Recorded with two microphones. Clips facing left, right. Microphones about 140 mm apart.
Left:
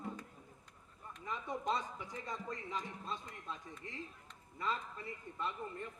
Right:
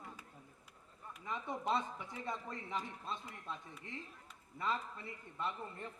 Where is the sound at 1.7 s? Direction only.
25° right (ahead or behind).